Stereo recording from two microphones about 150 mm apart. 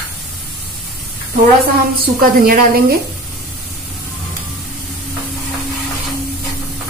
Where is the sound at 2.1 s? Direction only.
80° right.